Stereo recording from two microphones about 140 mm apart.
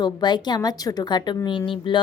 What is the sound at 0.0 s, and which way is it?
A woman's voice, 30° left (ahead or behind).